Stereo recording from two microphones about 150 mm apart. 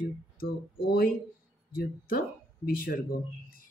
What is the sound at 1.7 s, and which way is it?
Speech, 75° left (ahead or behind).